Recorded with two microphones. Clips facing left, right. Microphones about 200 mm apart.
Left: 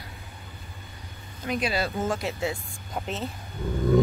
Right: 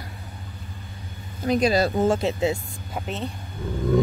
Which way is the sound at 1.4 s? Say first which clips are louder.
Right 7 dB; 40° right (ahead or behind).